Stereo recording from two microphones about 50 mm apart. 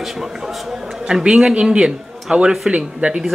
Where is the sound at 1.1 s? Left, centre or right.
Centre.